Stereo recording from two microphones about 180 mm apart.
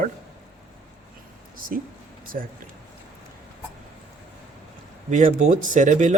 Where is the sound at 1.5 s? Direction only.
50° right (ahead or behind).